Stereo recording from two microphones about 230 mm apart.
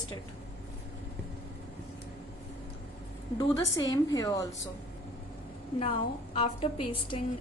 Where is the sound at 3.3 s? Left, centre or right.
Centre.